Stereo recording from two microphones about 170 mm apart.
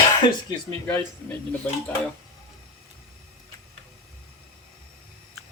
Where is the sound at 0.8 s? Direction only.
10° left (ahead or behind).